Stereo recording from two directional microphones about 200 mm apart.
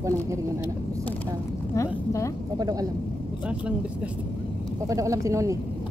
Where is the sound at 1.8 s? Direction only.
15° left (ahead or behind).